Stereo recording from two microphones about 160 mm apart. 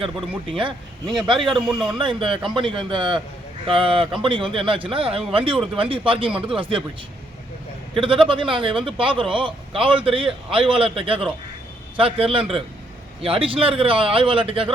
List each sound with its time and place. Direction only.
0.0 s speech: 35° right (ahead or behind)
1.5 s a man's voice: centre (ahead or behind)
2.0 s speech: 30° right (ahead or behind)
7.9 s speech: 35° right (ahead or behind)